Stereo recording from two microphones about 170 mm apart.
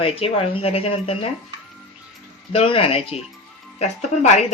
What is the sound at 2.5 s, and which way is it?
Speech, 35° left (ahead or behind).